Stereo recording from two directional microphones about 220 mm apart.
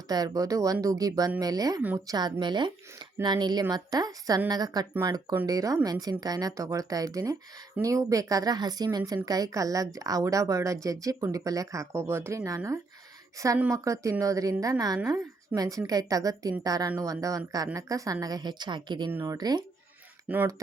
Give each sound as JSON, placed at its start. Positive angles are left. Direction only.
{"t": 0.1, "sound": "speech", "side_deg": -15}